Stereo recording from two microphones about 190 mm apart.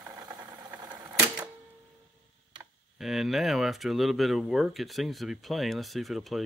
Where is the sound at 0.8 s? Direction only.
20° right (ahead or behind).